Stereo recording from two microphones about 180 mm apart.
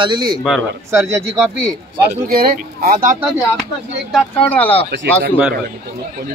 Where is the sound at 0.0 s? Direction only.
25° right (ahead or behind).